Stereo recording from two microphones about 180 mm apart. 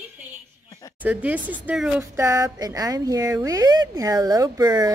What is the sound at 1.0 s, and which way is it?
Speech, 10° right (ahead or behind).